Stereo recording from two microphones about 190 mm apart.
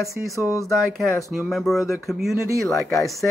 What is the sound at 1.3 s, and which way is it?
Speech, centre (ahead or behind).